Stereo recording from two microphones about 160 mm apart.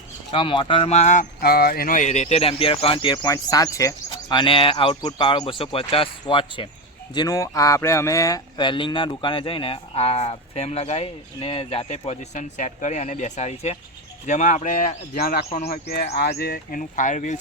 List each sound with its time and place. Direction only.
0.3 s speech: 30° left (ahead or behind); by 1.5 s 50° left (ahead or behind)
1.5 s speech: 70° left (ahead or behind); by 3.2 s 35° left (ahead or behind)
3.2 s speech: 20° left (ahead or behind); by 17.3 s 50° left (ahead or behind)